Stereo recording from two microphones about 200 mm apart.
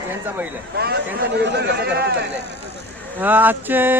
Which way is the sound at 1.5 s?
55° right (ahead or behind).